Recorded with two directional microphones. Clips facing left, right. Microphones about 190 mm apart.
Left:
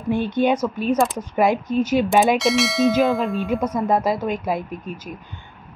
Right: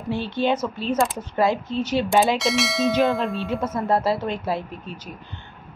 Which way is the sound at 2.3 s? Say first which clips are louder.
Left 4 dB; centre (ahead or behind).